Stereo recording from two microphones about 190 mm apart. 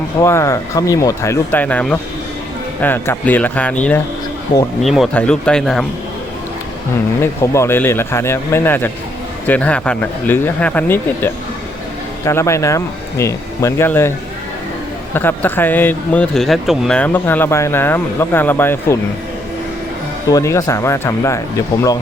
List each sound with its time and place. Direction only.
0.2 s speech: 15° left (ahead or behind)
7.2 s speech: 15° left (ahead or behind)
15.1 s speech: 10° left (ahead or behind)
20.3 s speech: 15° left (ahead or behind)